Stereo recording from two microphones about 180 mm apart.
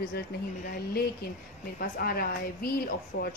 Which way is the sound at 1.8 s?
55° left (ahead or behind).